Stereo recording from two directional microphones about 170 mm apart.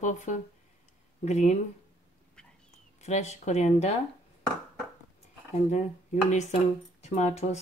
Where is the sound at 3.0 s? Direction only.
40° left (ahead or behind).